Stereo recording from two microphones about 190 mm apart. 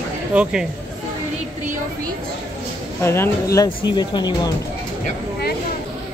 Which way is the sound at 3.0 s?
15° left (ahead or behind).